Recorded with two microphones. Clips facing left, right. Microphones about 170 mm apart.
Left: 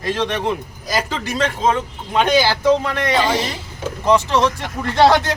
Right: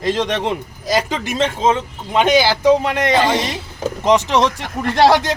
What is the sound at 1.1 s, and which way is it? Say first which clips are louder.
Speech: right 2 dB; 20° right (ahead or behind).